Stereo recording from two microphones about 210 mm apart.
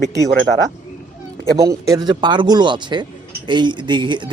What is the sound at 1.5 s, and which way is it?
Speech, 15° right (ahead or behind).